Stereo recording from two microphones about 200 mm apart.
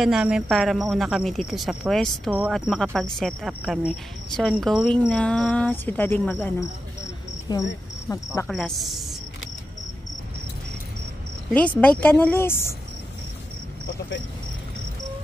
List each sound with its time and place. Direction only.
0.0 s speech: 5° right (ahead or behind)
7.5 s cricket: 20° left (ahead or behind)
8.1 s a woman's voice: 15° left (ahead or behind)
8.5 s speech: centre (ahead or behind)
11.8 s a woman's voice: 10° left (ahead or behind)